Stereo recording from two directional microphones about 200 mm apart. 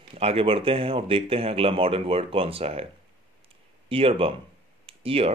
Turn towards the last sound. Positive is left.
turn(degrees=-30)  # may be behind; listen again after turning